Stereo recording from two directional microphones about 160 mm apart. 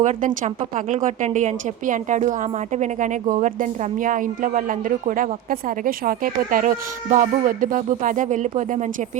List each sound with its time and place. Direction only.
0.0 s speech: 50° right (ahead or behind)